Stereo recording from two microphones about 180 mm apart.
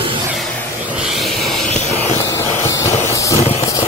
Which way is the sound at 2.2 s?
15° left (ahead or behind).